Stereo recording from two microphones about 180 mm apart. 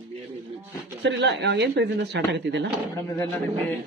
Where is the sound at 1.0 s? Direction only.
75° right (ahead or behind).